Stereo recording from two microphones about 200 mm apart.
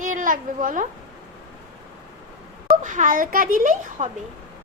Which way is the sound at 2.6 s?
40° right (ahead or behind).